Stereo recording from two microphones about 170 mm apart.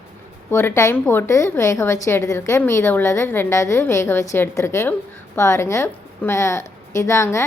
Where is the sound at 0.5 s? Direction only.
15° left (ahead or behind).